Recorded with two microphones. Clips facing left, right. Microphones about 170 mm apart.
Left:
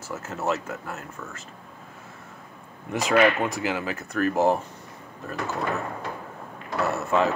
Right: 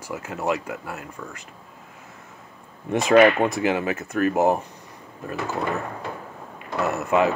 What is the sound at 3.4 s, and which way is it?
Speech, 20° right (ahead or behind).